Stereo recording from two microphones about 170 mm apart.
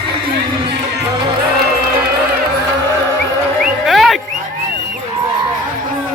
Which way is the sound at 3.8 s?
Centre (ahead or behind).